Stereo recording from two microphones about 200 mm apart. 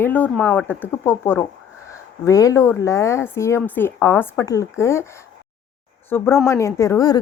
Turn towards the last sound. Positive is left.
turn(degrees=15)  # may be behind; listen again after turning